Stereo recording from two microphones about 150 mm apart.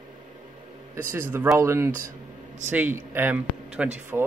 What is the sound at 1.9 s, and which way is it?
Speech, 60° right (ahead or behind).